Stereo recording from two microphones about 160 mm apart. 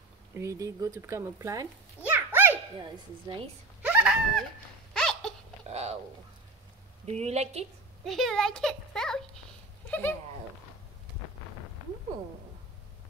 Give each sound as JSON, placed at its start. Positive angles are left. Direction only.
{"t": 0.4, "sound": "a child's voice", "side_deg": -20}
{"t": 2.8, "sound": "speech", "side_deg": -30}
{"t": 3.8, "sound": "speech", "side_deg": -10}
{"t": 4.9, "sound": "hiccup", "side_deg": 5}
{"t": 5.7, "sound": "speech", "side_deg": -40}
{"t": 7.1, "sound": "a woman's voice", "side_deg": -45}
{"t": 8.0, "sound": "a child's voice", "side_deg": 0}
{"t": 9.8, "sound": "dog", "side_deg": 10}